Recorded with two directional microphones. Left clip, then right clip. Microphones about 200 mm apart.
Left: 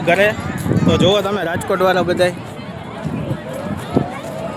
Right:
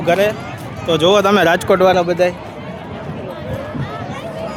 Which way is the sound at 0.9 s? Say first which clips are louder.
Right 5 dB; 35° right (ahead or behind).